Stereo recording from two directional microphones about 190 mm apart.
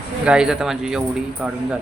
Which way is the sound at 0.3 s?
5° right (ahead or behind).